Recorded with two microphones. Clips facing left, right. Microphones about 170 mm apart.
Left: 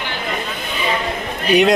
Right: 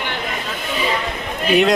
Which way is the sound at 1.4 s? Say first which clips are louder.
Left 1 dB; centre (ahead or behind).